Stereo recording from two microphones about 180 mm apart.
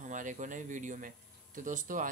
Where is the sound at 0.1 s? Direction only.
45° right (ahead or behind).